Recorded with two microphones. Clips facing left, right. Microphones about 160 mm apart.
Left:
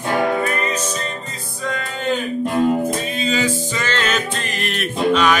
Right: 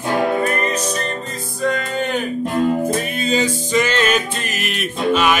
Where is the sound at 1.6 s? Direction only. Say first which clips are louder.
Right 4 dB; 55° right (ahead or behind).